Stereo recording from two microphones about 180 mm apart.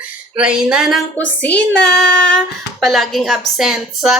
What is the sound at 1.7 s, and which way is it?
Child singing, 70° left (ahead or behind).